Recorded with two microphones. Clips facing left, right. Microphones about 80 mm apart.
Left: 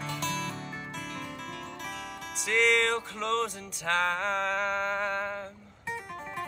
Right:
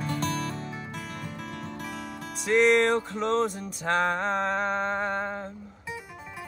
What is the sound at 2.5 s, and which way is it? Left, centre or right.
Music, right.